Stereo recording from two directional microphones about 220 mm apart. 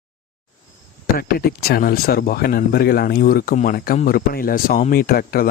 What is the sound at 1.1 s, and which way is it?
Speech, 45° left (ahead or behind).